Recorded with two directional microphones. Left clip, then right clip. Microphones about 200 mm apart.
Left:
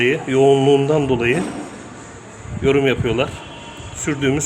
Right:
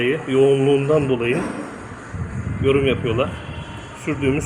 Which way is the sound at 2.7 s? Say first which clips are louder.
Left 2 dB; 40° left (ahead or behind).